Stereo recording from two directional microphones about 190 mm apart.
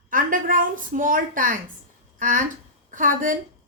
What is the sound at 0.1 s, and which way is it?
A woman's voice, 45° right (ahead or behind).